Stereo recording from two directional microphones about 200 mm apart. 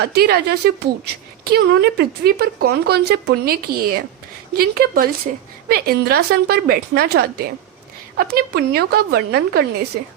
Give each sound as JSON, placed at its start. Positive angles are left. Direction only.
{"t": 0.0, "sound": "a woman's voice", "side_deg": -55}